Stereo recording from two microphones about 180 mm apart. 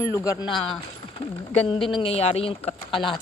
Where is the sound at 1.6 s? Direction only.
30° left (ahead or behind).